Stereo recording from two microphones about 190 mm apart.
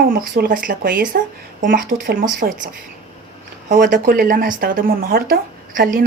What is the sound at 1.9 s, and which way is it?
Speech, 30° right (ahead or behind).